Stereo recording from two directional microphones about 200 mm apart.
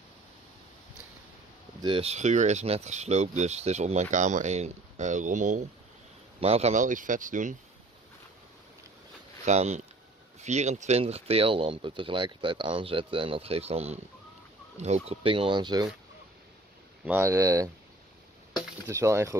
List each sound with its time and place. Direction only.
1.8 s speech: 25° right (ahead or behind)
9.4 s speech: 35° right (ahead or behind)
17.0 s speech: 10° right (ahead or behind)
18.9 s speech: 15° right (ahead or behind)